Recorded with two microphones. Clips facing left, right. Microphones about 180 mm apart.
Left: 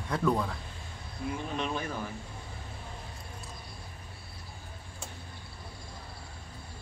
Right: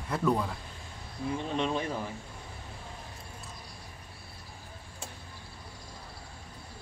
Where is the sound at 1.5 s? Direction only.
25° right (ahead or behind).